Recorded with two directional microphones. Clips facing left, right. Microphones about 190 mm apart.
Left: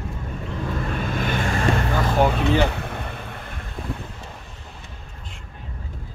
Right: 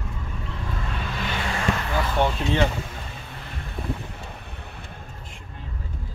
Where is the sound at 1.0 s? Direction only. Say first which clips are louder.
Left 4 dB; 50° left (ahead or behind).